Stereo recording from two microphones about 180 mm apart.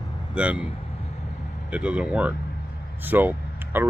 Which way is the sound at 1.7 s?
5° right (ahead or behind).